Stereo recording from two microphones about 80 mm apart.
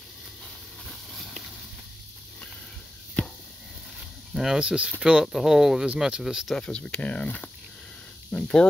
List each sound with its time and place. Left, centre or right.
4.3 s speech: centre
6.5 s speech: centre